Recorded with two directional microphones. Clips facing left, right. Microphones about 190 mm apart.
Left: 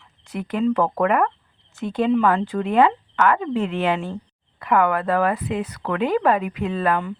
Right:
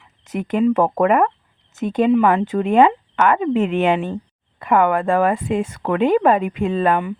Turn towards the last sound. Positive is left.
turn(degrees=-25)  # may be behind; listen again after turning